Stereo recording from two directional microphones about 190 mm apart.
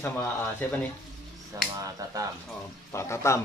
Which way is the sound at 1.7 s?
20° right (ahead or behind).